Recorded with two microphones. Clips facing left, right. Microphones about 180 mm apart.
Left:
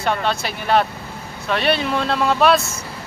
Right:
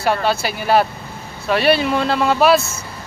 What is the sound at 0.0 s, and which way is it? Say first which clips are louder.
Speech: right 3 dB; 5° right (ahead or behind).